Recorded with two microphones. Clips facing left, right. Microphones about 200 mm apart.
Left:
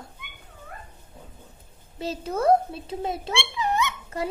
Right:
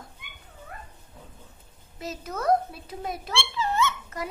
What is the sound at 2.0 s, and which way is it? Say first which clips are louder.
A child's voice: left 6 dB; 30° left (ahead or behind).